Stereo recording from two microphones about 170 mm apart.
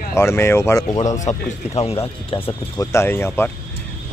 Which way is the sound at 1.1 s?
45° left (ahead or behind).